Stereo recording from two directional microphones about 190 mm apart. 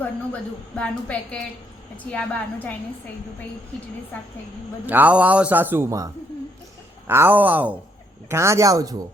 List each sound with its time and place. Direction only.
0.8 s a woman's voice: 5° left (ahead or behind)
4.9 s a man's voice: 10° right (ahead or behind)
7.1 s a man's voice: 10° right (ahead or behind)